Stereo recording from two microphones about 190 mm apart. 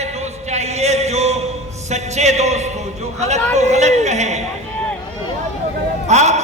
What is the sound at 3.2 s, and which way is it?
Speech, 35° right (ahead or behind).